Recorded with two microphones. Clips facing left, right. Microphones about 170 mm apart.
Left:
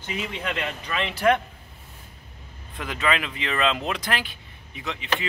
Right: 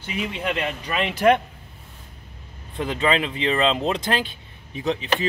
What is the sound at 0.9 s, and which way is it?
Speech, 20° right (ahead or behind).